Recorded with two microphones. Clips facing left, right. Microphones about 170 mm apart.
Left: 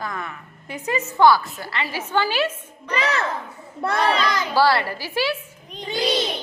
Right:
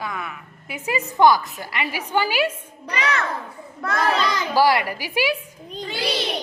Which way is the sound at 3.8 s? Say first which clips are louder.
Left 3 dB; 25° left (ahead or behind).